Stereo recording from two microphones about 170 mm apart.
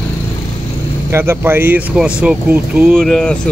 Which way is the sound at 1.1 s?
15° right (ahead or behind).